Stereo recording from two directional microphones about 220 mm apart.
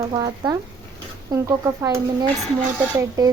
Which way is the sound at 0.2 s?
15° right (ahead or behind).